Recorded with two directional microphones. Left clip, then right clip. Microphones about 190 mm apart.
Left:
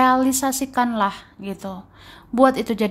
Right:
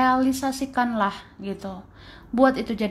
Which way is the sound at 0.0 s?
15° left (ahead or behind).